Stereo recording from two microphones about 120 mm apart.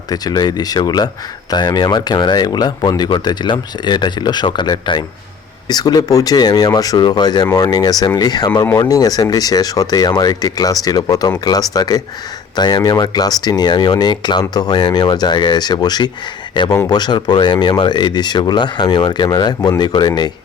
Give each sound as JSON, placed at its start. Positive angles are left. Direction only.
{"t": 0.1, "sound": "speech", "side_deg": 35}